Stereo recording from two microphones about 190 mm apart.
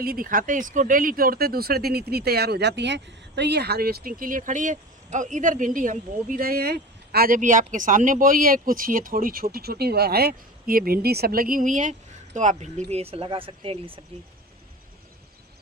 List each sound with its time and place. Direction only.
0.0 s speech: 50° right (ahead or behind); by 14.0 s 30° right (ahead or behind)